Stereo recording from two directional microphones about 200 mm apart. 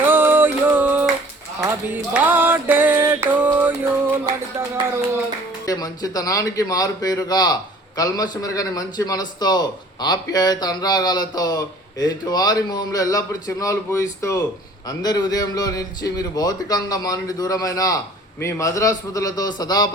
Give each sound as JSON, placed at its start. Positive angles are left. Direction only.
{"t": 0.0, "sound": "a sound", "side_deg": -10}
{"t": 1.6, "sound": "music", "side_deg": -10}
{"t": 5.6, "sound": "a man's voice", "side_deg": 20}